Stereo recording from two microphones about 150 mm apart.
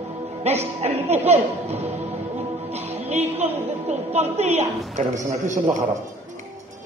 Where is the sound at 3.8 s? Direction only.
45° right (ahead or behind).